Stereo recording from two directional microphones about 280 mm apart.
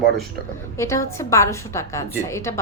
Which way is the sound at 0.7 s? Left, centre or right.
Centre.